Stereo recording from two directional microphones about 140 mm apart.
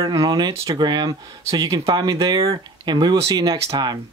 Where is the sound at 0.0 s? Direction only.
30° right (ahead or behind).